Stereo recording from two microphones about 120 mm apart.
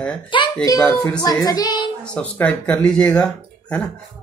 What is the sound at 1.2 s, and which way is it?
Speech, 30° left (ahead or behind).